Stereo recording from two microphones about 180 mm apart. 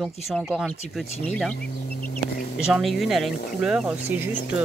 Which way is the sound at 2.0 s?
55° left (ahead or behind).